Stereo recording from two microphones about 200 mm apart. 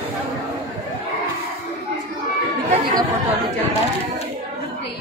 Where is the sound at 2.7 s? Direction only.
25° right (ahead or behind).